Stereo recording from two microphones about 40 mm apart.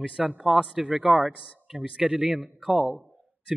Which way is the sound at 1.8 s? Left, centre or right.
Right.